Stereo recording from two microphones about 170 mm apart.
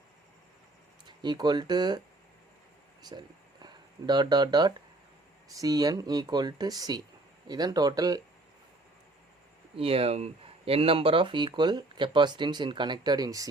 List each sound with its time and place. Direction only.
1.0 s speech: 25° right (ahead or behind)
3.0 s speech: 25° right (ahead or behind)
9.7 s speech: 35° right (ahead or behind)